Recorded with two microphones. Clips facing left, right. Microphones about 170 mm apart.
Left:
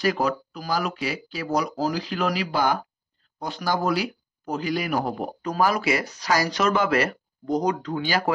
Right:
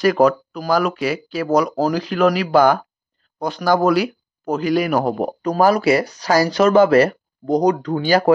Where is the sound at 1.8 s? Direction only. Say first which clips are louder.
Right 8 dB; 55° right (ahead or behind).